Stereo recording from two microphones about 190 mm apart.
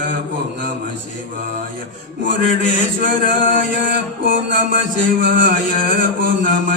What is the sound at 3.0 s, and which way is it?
Music, 45° right (ahead or behind).